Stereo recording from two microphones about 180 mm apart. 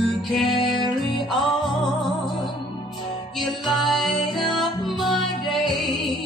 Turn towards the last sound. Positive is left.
turn(degrees=0)  # may be behind; listen again after turning